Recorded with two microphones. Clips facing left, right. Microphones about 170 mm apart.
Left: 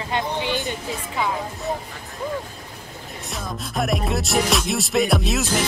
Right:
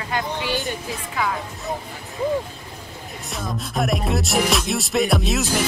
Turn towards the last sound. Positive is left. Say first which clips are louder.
# even
turn(degrees=0)  # may be behind; listen again after turning